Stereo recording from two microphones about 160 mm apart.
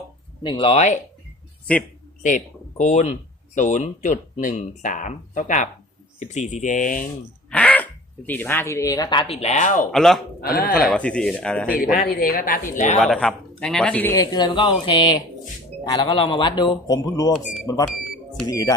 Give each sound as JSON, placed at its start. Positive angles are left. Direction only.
{"t": 0.4, "sound": "speech", "side_deg": 30}
{"t": 2.2, "sound": "speech", "side_deg": 50}
{"t": 7.5, "sound": "a sound", "side_deg": 10}
{"t": 8.3, "sound": "speech", "side_deg": 10}
{"t": 9.9, "sound": "speech", "side_deg": 0}
{"t": 10.4, "sound": "speech", "side_deg": 70}
{"t": 10.8, "sound": "a man's voice", "side_deg": 5}
{"t": 11.9, "sound": "speech", "side_deg": 65}
{"t": 12.7, "sound": "speech", "side_deg": 50}
{"t": 13.0, "sound": "a man's voice", "side_deg": 0}
{"t": 14.3, "sound": "speech", "side_deg": 30}